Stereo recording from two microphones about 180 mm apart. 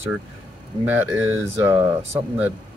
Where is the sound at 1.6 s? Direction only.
10° right (ahead or behind).